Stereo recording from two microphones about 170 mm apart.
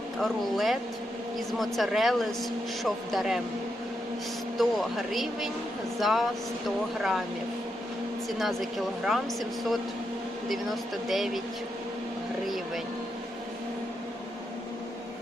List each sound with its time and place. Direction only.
0.2 s speech: centre (ahead or behind)
4.5 s speech: centre (ahead or behind)
9.0 s speech: centre (ahead or behind)